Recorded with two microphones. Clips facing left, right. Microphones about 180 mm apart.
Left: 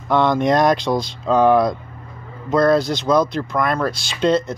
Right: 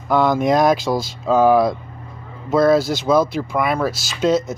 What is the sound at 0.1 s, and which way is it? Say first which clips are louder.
Speech: even; 5° right (ahead or behind).